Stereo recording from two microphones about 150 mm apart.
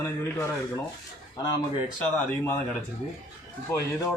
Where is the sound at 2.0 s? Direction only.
15° left (ahead or behind).